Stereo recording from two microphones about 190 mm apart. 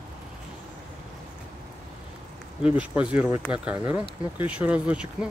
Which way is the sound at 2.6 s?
5° right (ahead or behind).